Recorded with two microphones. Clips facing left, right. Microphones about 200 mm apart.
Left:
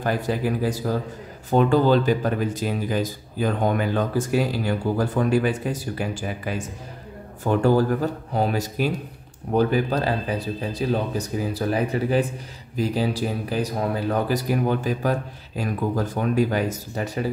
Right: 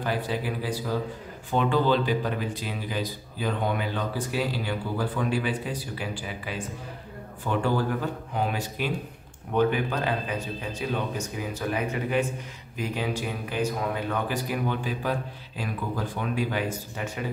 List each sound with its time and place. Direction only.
0.0 s speech: 45° left (ahead or behind)